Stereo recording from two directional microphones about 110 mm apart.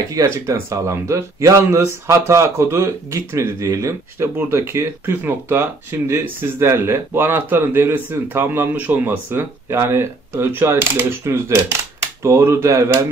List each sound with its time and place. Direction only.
0.1 s speech: 30° right (ahead or behind)